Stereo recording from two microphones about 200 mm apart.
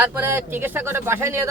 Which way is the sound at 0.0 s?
10° right (ahead or behind).